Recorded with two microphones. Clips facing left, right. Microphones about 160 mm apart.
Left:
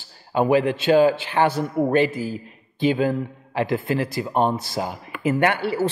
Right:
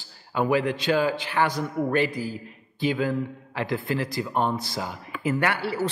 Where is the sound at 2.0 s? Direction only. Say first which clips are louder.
Left 3 dB; 15° right (ahead or behind).